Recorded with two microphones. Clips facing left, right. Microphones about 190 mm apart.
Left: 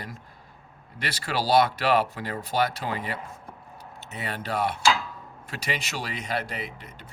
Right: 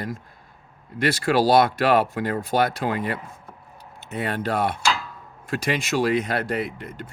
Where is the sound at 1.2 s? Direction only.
50° right (ahead or behind).